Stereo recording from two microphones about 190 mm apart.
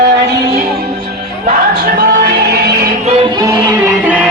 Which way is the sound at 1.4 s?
45° right (ahead or behind).